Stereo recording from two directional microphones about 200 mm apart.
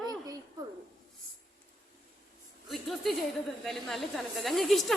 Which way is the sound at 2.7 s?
Centre (ahead or behind).